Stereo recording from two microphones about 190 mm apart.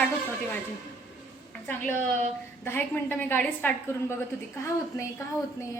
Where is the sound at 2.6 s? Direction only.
10° left (ahead or behind).